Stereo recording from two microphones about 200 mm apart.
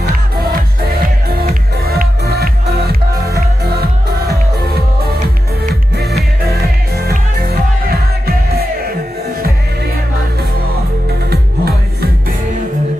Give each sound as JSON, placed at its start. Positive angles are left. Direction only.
{"t": 1.3, "sound": "music", "side_deg": -50}
{"t": 7.1, "sound": "music", "side_deg": -50}
{"t": 11.2, "sound": "music", "side_deg": -50}